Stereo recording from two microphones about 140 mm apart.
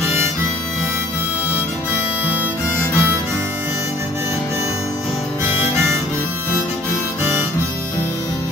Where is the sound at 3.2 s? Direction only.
15° right (ahead or behind).